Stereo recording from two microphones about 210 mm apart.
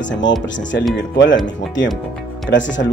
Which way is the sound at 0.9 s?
60° left (ahead or behind).